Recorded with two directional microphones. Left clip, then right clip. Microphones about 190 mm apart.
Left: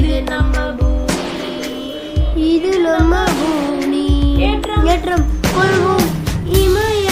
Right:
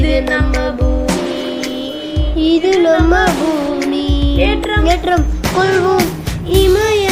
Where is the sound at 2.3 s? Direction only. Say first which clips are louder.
Right 2 dB; 10° left (ahead or behind).